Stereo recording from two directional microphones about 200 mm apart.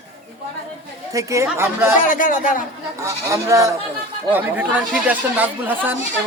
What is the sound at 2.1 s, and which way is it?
Speech, 40° left (ahead or behind).